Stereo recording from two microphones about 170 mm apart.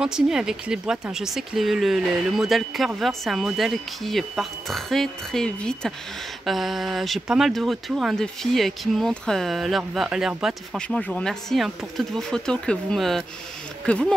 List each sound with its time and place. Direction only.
0.0 s speech: 5° right (ahead or behind)